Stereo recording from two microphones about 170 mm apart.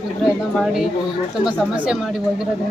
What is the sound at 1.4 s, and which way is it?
Speech, 5° right (ahead or behind).